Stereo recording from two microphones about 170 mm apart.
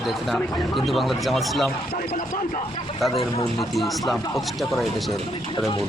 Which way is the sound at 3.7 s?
Centre (ahead or behind).